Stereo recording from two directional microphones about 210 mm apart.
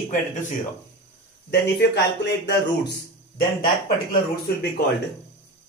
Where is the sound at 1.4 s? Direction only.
55° left (ahead or behind).